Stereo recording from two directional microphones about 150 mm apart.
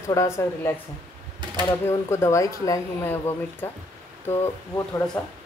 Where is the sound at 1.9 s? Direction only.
20° left (ahead or behind).